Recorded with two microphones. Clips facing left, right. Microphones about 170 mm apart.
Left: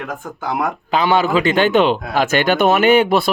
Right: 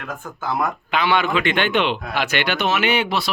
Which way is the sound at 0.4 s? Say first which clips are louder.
Left 2 dB; 15° left (ahead or behind).